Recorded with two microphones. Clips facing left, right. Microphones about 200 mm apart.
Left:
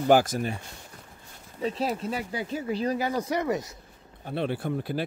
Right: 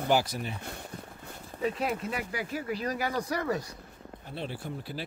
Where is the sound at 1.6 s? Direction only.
30° left (ahead or behind).